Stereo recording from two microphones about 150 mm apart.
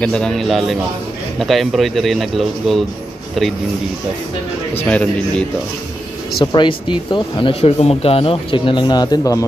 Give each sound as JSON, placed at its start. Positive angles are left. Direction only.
{"t": 0.0, "sound": "speech", "side_deg": 5}
{"t": 4.8, "sound": "speech", "side_deg": 5}
{"t": 6.4, "sound": "speech", "side_deg": 30}